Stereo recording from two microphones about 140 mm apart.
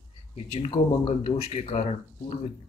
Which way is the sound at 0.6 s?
45° left (ahead or behind).